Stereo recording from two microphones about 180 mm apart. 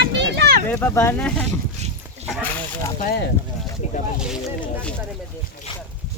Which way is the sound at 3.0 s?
60° left (ahead or behind).